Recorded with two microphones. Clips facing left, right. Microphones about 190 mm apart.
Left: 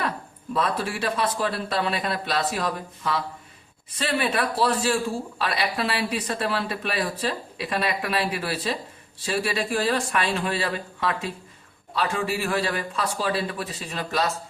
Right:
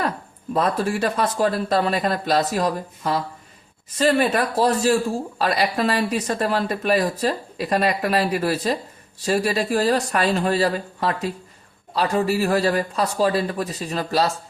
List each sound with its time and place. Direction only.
0.5 s a man's voice: 45° right (ahead or behind)